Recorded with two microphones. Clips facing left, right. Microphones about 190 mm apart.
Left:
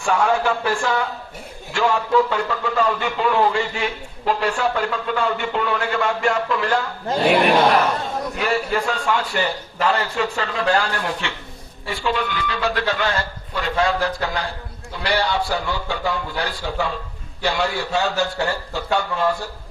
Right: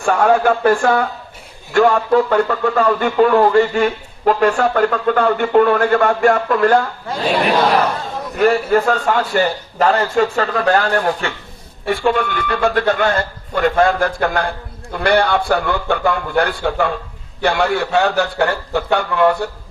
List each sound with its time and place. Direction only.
0.0 s a man's voice: 55° right (ahead or behind)
8.4 s a man's voice: 50° right (ahead or behind)